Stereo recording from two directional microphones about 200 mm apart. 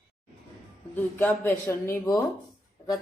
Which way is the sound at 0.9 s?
10° left (ahead or behind).